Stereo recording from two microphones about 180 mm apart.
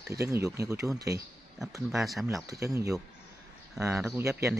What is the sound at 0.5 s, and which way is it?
Speech, 15° right (ahead or behind).